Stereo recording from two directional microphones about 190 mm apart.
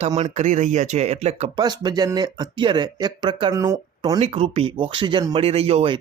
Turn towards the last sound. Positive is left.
turn(degrees=-30)  # may be behind; listen again after turning